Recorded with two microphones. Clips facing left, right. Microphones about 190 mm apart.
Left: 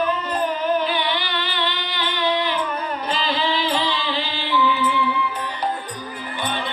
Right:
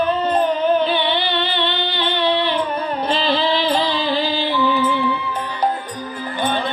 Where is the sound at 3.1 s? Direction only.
35° right (ahead or behind).